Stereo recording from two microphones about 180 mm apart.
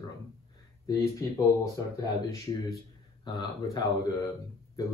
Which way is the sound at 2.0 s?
20° left (ahead or behind).